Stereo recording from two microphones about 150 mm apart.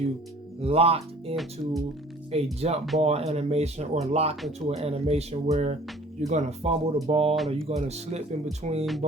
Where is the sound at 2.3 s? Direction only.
45° right (ahead or behind).